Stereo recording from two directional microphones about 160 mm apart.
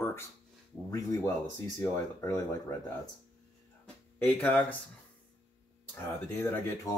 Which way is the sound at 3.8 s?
10° left (ahead or behind).